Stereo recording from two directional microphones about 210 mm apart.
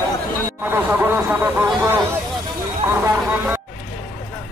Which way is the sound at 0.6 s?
10° right (ahead or behind).